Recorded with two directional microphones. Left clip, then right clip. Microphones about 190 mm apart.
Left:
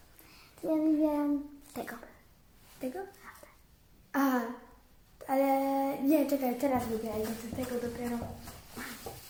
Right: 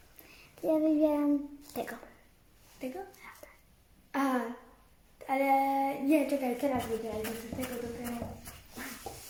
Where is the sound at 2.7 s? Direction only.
Centre (ahead or behind).